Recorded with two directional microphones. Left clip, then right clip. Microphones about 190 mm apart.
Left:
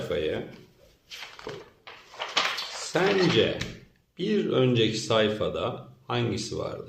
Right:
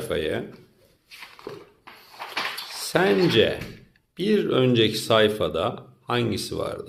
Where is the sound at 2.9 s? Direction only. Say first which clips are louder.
Right 4 dB; 40° right (ahead or behind).